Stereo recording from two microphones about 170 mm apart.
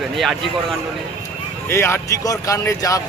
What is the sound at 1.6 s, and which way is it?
Speech, 15° left (ahead or behind).